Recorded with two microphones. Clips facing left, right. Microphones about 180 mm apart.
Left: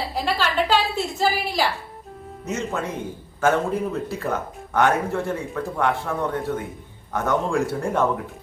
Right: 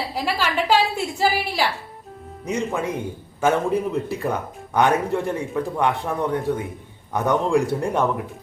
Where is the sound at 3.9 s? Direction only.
15° right (ahead or behind).